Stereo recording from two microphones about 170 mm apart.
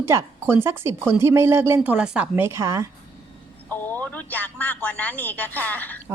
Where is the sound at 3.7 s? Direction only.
10° left (ahead or behind).